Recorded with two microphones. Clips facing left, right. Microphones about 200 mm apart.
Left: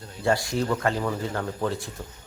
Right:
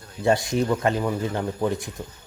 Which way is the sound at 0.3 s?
20° right (ahead or behind).